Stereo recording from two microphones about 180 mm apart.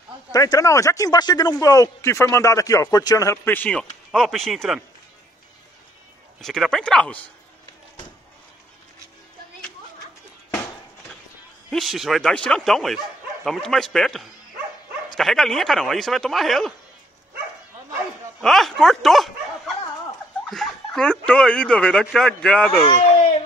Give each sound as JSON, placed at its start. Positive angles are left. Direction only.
{"t": 0.3, "sound": "speech", "side_deg": 20}
{"t": 6.4, "sound": "speech", "side_deg": 5}
{"t": 11.7, "sound": "speech", "side_deg": 0}
{"t": 18.4, "sound": "speech", "side_deg": 0}
{"t": 20.4, "sound": "speech", "side_deg": 0}